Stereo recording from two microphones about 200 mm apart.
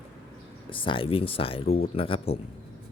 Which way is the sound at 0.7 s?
25° left (ahead or behind).